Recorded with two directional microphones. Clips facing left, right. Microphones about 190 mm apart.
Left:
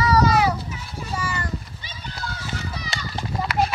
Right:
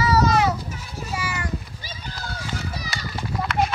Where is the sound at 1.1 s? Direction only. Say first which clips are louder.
Left 1 dB; 10° right (ahead or behind).